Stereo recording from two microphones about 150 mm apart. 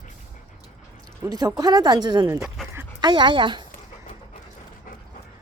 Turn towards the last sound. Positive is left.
turn(degrees=-30)  # may be behind; listen again after turning